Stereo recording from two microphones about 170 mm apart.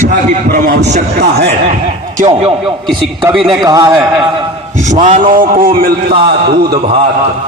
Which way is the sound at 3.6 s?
20° right (ahead or behind).